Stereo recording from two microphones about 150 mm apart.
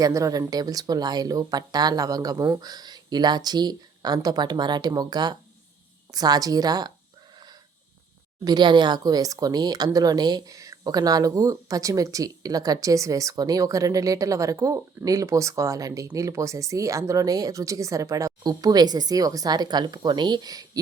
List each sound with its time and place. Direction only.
0.0 s speech: 25° right (ahead or behind)
7.3 s a sound: 25° right (ahead or behind)
8.4 s speech: 30° right (ahead or behind)